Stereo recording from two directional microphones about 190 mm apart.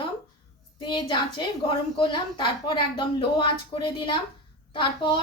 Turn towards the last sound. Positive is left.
turn(degrees=25)  # may be behind; listen again after turning